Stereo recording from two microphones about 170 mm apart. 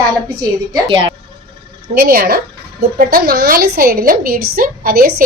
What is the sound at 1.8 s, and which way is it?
Speech, 60° right (ahead or behind).